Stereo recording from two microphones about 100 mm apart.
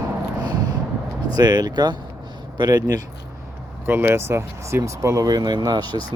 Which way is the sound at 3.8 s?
20° right (ahead or behind).